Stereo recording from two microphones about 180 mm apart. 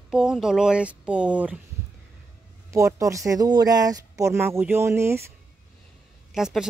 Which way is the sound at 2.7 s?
15° right (ahead or behind).